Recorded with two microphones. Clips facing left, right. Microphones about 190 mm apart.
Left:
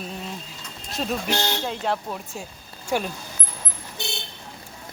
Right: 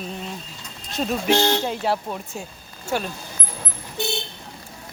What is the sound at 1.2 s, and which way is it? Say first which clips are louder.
Speech: right 6 dB; 5° right (ahead or behind).